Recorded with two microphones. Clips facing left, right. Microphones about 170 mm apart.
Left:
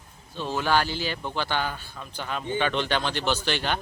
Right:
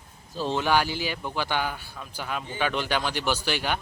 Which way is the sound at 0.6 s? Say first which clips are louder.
Left 1 dB; 15° right (ahead or behind).